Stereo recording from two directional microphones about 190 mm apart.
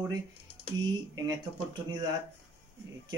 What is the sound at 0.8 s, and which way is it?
Speech, 20° right (ahead or behind).